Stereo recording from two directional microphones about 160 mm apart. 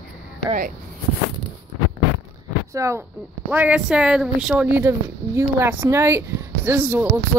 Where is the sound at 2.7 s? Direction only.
20° right (ahead or behind).